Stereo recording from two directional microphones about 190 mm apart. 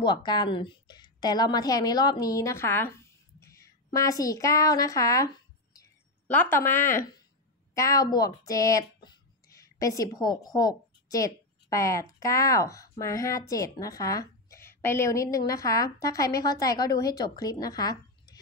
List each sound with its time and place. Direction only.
0.0 s a woman's voice: 20° left (ahead or behind)